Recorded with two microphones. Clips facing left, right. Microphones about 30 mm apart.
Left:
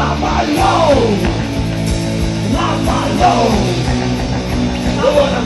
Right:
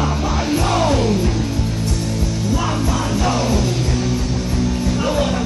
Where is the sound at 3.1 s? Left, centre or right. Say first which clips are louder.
Left 10 dB; left.